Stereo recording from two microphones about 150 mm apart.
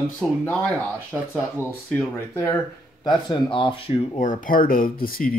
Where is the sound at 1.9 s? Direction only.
15° left (ahead or behind).